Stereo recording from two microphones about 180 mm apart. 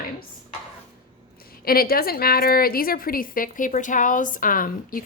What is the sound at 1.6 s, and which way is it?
A woman's voice, 55° left (ahead or behind).